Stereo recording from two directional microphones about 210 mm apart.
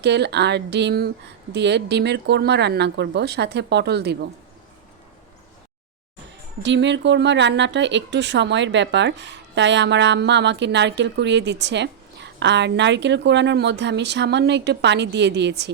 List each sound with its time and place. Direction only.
0.0 s speech: 55° right (ahead or behind)
6.6 s speech: 55° right (ahead or behind)